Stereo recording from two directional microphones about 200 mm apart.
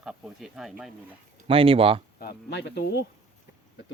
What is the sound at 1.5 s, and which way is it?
Speech, 25° right (ahead or behind).